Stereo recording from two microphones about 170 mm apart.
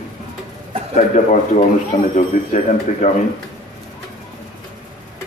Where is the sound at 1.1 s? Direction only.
45° left (ahead or behind).